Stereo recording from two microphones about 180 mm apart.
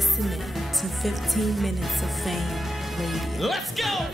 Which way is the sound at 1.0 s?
Centre (ahead or behind).